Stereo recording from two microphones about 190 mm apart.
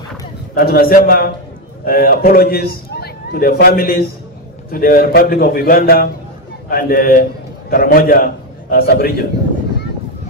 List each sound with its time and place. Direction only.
0.6 s a man's voice: 50° left (ahead or behind)